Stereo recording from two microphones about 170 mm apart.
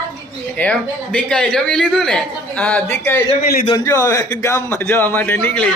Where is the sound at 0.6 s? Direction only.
5° left (ahead or behind).